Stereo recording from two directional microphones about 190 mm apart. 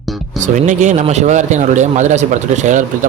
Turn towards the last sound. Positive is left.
turn(degrees=-40)  # may be behind; listen again after turning